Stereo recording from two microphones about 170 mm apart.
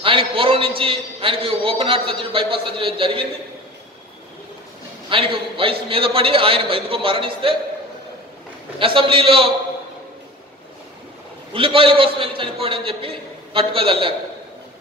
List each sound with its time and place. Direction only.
0.0 s a man's voice: 30° right (ahead or behind)
5.1 s a man's voice: 30° right (ahead or behind)
8.7 s a man's voice: 30° right (ahead or behind)
11.5 s a man's voice: 30° right (ahead or behind)